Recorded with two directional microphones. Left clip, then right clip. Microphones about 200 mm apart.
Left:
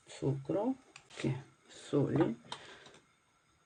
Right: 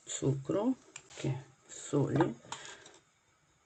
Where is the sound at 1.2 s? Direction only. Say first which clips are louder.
Left 1 dB; 15° left (ahead or behind).